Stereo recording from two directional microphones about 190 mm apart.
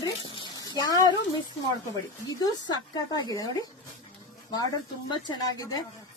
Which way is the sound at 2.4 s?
20° left (ahead or behind).